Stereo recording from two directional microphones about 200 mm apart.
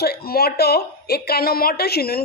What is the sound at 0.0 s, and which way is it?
A woman's voice, 50° left (ahead or behind).